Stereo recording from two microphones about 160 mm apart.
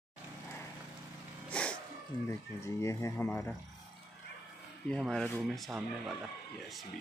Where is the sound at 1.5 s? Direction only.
5° left (ahead or behind).